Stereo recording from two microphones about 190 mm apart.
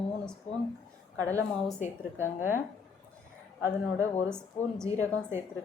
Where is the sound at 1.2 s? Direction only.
10° left (ahead or behind).